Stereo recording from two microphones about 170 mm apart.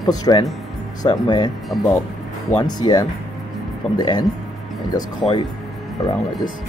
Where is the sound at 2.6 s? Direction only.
25° left (ahead or behind).